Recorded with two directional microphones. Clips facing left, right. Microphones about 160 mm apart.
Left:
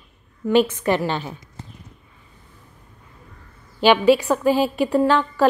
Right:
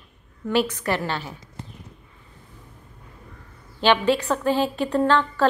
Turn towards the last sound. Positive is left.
turn(degrees=10)  # may be behind; listen again after turning